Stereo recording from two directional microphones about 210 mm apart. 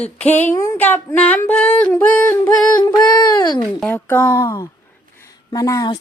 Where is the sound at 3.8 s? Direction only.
10° left (ahead or behind).